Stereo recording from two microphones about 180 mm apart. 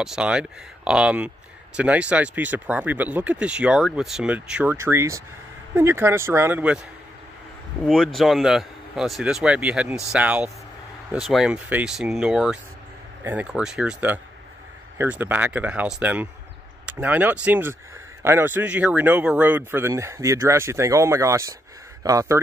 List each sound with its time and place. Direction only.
0.0 s a man's voice: 5° right (ahead or behind)
7.8 s a man's voice: centre (ahead or behind); by 22.4 s 15° right (ahead or behind)